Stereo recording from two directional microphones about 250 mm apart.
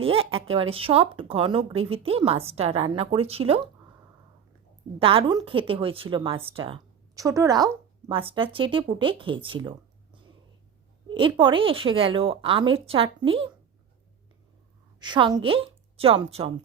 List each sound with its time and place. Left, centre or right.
0.0 s speech: right
4.9 s speech: right
14.9 s a woman's voice: centre